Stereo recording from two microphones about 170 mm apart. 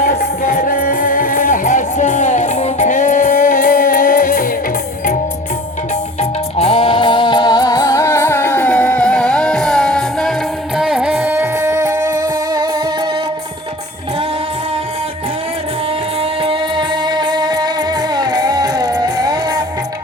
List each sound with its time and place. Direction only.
0.0 s music: 55° left (ahead or behind)
6.1 s music: 35° left (ahead or behind); by 12.1 s 20° right (ahead or behind)
16.4 s music: 30° right (ahead or behind)